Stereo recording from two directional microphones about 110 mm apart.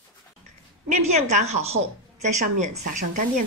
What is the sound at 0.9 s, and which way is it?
A woman's voice, 90° right.